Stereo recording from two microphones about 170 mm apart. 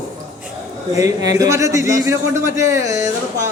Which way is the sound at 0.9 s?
20° right (ahead or behind).